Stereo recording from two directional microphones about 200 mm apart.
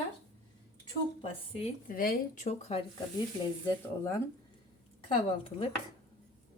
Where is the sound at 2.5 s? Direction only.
30° left (ahead or behind).